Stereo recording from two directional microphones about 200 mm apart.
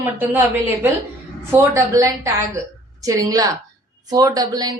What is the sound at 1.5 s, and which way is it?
A woman's voice, 15° right (ahead or behind).